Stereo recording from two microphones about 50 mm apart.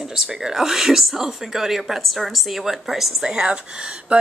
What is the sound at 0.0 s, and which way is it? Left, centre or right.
Speech, centre.